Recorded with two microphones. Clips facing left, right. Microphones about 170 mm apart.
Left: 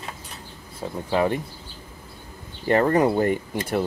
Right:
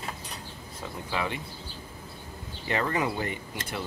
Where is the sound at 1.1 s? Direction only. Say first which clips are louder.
Left 10 dB; 45° left (ahead or behind).